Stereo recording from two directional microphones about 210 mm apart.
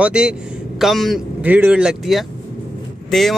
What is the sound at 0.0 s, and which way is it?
Speech, 5° right (ahead or behind).